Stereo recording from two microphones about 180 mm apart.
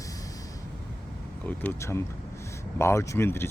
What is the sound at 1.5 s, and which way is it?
Speech, 10° left (ahead or behind).